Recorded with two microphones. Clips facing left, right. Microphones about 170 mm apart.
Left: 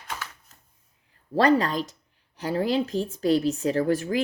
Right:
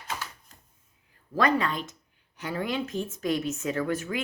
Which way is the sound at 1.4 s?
35° left (ahead or behind).